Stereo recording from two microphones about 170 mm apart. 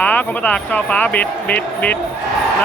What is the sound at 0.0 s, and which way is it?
Speech, 10° left (ahead or behind).